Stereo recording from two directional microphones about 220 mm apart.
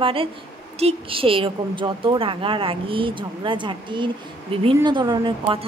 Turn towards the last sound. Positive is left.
turn(degrees=-20)  # may be behind; listen again after turning